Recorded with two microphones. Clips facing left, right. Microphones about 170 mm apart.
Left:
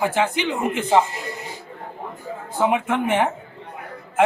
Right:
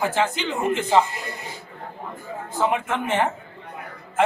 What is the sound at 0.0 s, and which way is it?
A man's voice, 15° left (ahead or behind).